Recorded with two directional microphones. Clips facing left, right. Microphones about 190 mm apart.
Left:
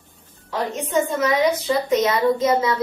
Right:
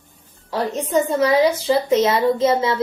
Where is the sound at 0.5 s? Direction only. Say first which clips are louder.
Right 3 dB; 30° right (ahead or behind).